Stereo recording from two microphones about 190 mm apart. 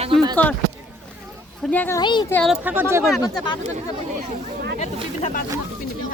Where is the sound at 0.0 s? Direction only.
25° right (ahead or behind).